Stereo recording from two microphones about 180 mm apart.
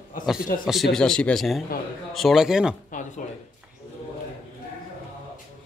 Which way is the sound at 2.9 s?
45° left (ahead or behind).